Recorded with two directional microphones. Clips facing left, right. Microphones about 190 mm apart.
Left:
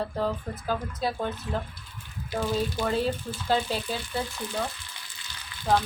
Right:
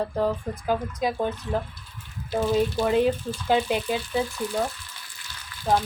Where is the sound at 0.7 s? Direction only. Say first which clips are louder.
Right 4 dB; 15° right (ahead or behind).